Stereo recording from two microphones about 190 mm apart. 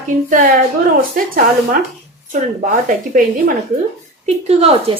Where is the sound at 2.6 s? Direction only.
45° right (ahead or behind).